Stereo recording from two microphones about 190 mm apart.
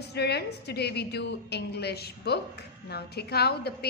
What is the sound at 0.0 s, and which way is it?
A woman's voice, 60° left (ahead or behind).